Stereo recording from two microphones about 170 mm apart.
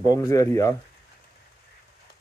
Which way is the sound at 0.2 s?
20° left (ahead or behind).